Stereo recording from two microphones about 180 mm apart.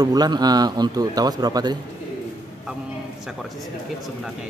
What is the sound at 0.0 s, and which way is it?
Speech, 20° right (ahead or behind).